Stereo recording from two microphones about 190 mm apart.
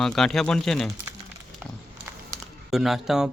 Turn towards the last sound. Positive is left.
turn(degrees=0)  # may be behind; listen again after turning